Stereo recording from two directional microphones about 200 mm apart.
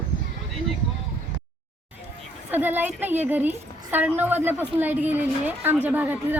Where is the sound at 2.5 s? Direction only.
10° right (ahead or behind).